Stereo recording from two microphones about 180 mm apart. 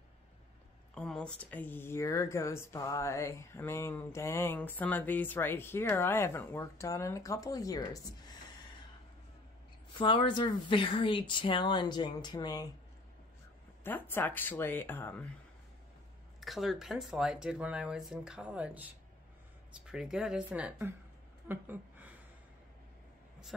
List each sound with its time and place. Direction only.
0.9 s speech: 5° left (ahead or behind)
9.9 s speech: 30° left (ahead or behind)
13.8 s speech: 10° left (ahead or behind)
16.3 s speech: centre (ahead or behind)
19.9 s speech: 5° right (ahead or behind)